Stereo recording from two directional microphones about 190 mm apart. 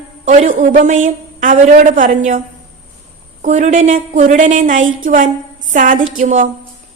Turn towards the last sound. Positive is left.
turn(degrees=-45)  # may be behind; listen again after turning